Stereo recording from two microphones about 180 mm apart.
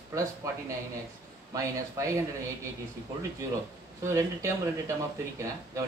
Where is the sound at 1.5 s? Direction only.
15° right (ahead or behind).